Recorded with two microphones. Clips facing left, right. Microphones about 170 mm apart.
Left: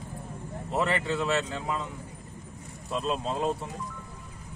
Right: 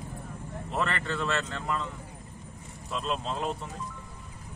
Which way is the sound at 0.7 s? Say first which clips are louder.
Left 3 dB; 10° left (ahead or behind).